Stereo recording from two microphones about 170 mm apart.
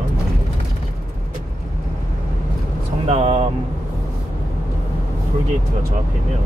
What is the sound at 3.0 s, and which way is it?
Vehicle, 40° right (ahead or behind).